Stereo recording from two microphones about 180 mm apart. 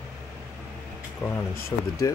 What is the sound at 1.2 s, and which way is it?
Speech, 15° left (ahead or behind).